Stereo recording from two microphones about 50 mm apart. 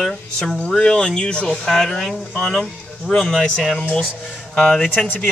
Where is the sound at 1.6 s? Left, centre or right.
Centre.